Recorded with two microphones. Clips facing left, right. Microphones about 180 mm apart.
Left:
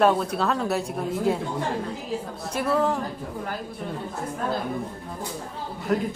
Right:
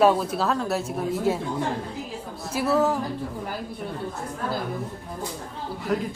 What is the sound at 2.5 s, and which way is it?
Speech, 5° right (ahead or behind).